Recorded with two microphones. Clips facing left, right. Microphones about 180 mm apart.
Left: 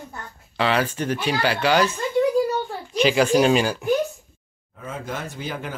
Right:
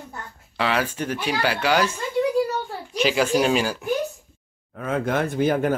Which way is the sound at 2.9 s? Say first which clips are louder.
Left 3 dB; 5° right (ahead or behind).